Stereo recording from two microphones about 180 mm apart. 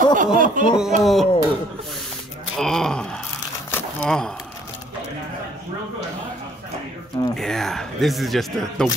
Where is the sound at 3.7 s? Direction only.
5° left (ahead or behind).